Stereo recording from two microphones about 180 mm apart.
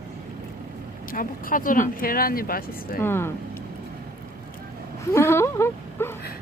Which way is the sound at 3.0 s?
15° left (ahead or behind).